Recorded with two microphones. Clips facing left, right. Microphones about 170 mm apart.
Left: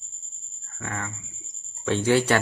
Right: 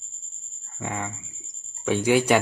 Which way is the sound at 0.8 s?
20° right (ahead or behind).